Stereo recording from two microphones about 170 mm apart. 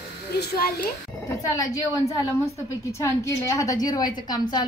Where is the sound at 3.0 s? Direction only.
20° left (ahead or behind).